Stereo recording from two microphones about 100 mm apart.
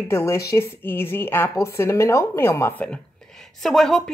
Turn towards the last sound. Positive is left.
turn(degrees=5)  # may be behind; listen again after turning